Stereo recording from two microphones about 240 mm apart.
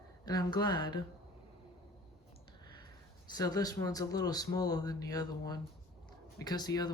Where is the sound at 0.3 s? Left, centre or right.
Centre.